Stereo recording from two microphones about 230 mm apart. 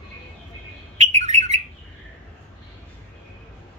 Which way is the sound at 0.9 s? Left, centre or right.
Right.